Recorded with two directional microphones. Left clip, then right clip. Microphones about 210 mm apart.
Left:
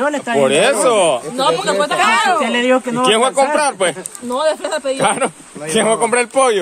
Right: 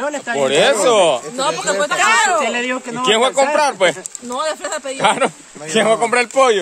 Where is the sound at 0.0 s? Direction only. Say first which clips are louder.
Left 4 dB; 45° left (ahead or behind).